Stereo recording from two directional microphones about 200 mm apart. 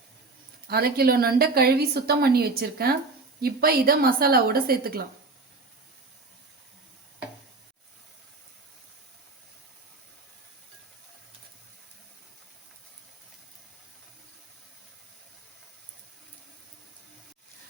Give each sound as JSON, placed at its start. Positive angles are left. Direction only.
{"t": 0.7, "sound": "a woman's voice", "side_deg": -50}